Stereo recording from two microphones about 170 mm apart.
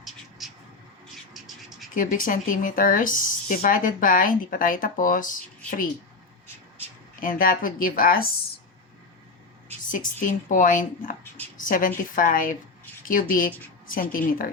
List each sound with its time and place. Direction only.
0.0 s cat: centre (ahead or behind)
1.3 s scratch: centre (ahead or behind)
1.9 s speech: 55° left (ahead or behind)
7.2 s speech: 55° left (ahead or behind)
9.9 s speech: 50° left (ahead or behind)